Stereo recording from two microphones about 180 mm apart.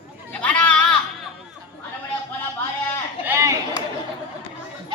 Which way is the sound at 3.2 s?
15° right (ahead or behind).